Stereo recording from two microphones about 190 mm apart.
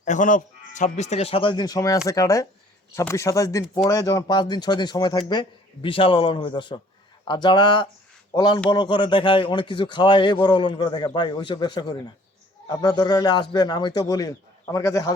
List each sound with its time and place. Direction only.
0.0 s a man's voice: 40° left (ahead or behind); by 15.1 s 15° left (ahead or behind)